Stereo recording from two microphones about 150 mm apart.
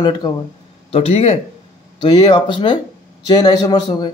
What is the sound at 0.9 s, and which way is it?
A man's voice, 40° left (ahead or behind).